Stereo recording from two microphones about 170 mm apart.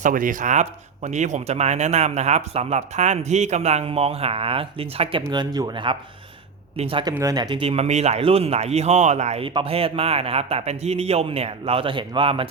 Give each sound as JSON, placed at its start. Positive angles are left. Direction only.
{"t": 0.0, "sound": "speech", "side_deg": -50}
{"t": 7.1, "sound": "speech", "side_deg": -20}